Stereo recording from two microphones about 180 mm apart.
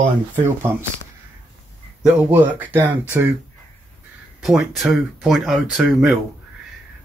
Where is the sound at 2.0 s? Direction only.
5° right (ahead or behind).